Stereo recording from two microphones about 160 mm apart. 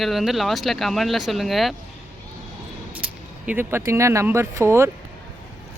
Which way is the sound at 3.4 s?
15° right (ahead or behind).